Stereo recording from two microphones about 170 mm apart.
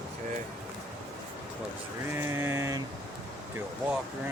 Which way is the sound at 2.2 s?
15° right (ahead or behind).